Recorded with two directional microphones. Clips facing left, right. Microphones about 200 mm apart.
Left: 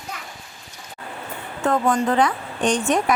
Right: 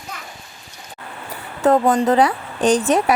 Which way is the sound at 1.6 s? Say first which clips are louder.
Right 5 dB; 35° right (ahead or behind).